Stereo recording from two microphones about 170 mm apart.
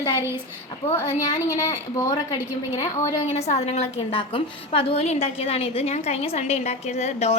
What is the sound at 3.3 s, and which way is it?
A woman's voice, 40° left (ahead or behind).